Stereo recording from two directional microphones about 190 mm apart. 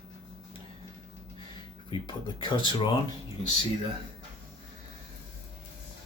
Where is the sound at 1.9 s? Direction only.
25° left (ahead or behind).